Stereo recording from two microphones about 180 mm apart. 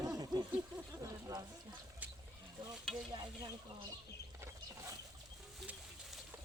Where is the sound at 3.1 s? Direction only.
25° right (ahead or behind).